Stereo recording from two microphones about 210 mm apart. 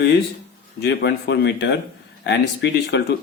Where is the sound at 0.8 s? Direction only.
50° left (ahead or behind).